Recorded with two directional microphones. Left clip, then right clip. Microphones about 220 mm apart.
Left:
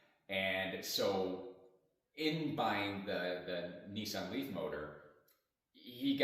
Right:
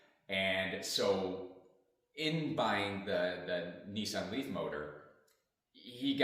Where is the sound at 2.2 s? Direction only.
20° right (ahead or behind).